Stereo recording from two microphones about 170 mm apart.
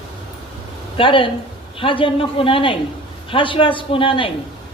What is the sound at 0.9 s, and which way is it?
A man's voice, 30° left (ahead or behind).